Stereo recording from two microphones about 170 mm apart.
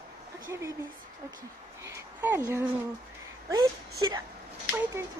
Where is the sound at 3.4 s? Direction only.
25° right (ahead or behind).